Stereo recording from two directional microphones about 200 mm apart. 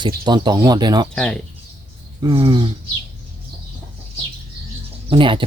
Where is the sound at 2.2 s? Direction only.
25° right (ahead or behind).